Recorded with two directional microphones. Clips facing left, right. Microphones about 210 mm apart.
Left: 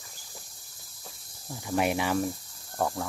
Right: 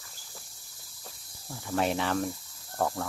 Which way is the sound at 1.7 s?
10° left (ahead or behind).